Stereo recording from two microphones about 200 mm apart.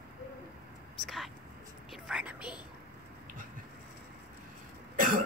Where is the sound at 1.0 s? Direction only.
Centre (ahead or behind).